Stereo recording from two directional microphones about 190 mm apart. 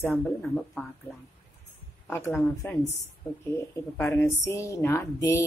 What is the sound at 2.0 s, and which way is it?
A woman's voice, 10° left (ahead or behind).